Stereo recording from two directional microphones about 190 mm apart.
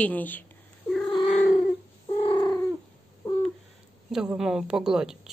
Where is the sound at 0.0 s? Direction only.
10° left (ahead or behind).